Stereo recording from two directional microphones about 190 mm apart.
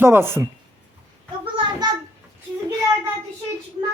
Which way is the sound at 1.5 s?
25° right (ahead or behind).